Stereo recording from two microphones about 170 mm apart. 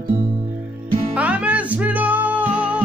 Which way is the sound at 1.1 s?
10° right (ahead or behind).